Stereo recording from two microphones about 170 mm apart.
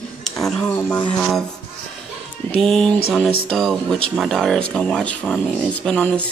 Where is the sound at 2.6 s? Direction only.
Centre (ahead or behind).